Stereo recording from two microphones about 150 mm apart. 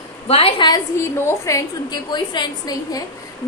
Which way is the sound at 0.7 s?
20° left (ahead or behind).